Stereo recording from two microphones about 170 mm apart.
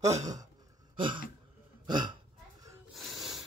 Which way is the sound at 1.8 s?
25° right (ahead or behind).